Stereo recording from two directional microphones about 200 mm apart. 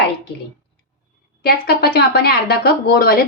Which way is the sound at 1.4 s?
50° left (ahead or behind).